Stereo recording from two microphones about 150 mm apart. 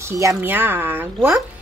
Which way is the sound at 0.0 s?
20° right (ahead or behind).